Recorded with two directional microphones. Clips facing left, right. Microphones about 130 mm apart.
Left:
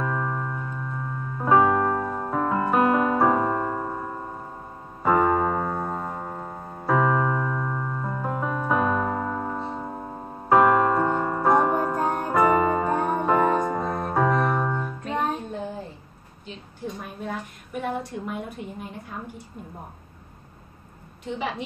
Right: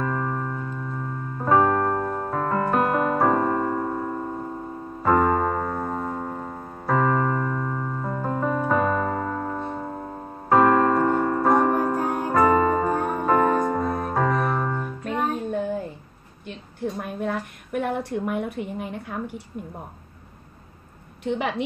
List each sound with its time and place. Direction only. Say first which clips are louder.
0.0 s music: right 1 dB; centre (ahead or behind)
5.0 s piano: right 1 dB; 5° left (ahead or behind)
11.8 s music: right 1 dB; 5° right (ahead or behind)
17.0 s a sound: right 5 dB; 60° right (ahead or behind)
21.2 s a woman's voice: right 5 dB; 60° right (ahead or behind)